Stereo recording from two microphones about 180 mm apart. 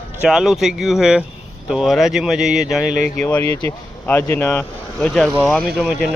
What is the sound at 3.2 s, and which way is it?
Speech, 10° left (ahead or behind).